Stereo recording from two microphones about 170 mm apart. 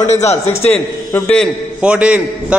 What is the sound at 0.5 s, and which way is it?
Speech, 15° left (ahead or behind).